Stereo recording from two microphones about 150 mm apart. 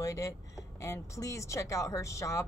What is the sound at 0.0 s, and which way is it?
Speech, 20° left (ahead or behind).